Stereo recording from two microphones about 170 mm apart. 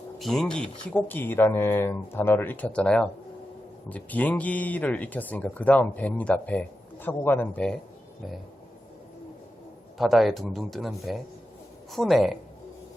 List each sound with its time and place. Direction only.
0.2 s speech: centre (ahead or behind)
10.0 s speech: centre (ahead or behind)